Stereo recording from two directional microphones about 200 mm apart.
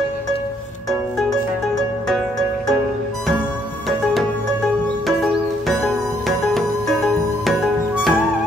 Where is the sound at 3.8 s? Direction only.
Centre (ahead or behind).